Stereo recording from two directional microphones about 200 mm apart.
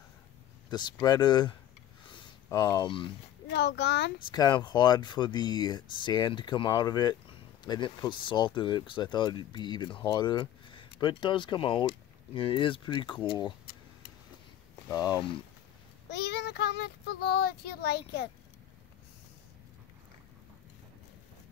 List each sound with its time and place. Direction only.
0.7 s speech: 20° left (ahead or behind)
2.5 s speech: 20° left (ahead or behind)
3.4 s a child's voice: 60° left (ahead or behind)
4.2 s speech: 20° left (ahead or behind)
14.9 s speech: 20° left (ahead or behind)
16.1 s speech: 55° left (ahead or behind)